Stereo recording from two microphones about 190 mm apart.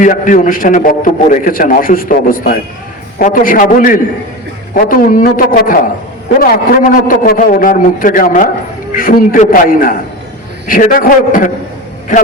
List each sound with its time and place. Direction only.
0.0 s a man's voice: 45° left (ahead or behind)